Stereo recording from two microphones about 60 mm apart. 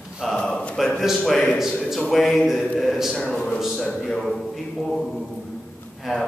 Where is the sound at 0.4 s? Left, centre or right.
Centre.